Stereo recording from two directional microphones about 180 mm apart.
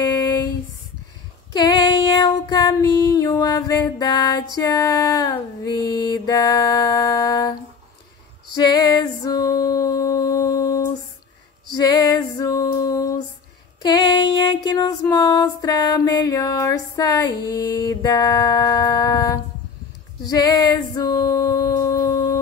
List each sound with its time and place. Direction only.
0.0 s a sound: 25° left (ahead or behind)
1.5 s female singing: 25° left (ahead or behind)
4.6 s music: 20° left (ahead or behind)
8.6 s music: 25° left (ahead or behind)
11.7 s female singing: 20° left (ahead or behind)
13.8 s music: 25° left (ahead or behind)